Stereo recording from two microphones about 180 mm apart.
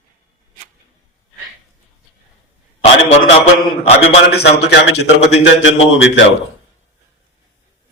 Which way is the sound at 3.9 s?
65° left (ahead or behind).